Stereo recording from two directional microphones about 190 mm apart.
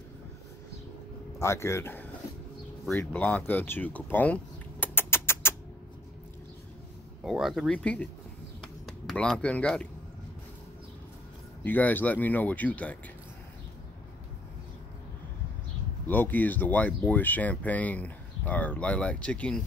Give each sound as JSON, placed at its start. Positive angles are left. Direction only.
{"t": 1.4, "sound": "speech", "side_deg": 15}
{"t": 2.9, "sound": "a sound", "side_deg": 10}
{"t": 7.2, "sound": "speech", "side_deg": 0}
{"t": 8.5, "sound": "a sound", "side_deg": 5}
{"t": 11.6, "sound": "speech", "side_deg": 10}
{"t": 16.1, "sound": "speech", "side_deg": 10}